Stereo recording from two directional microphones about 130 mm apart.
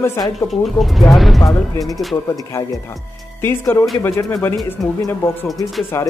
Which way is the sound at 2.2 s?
25° left (ahead or behind).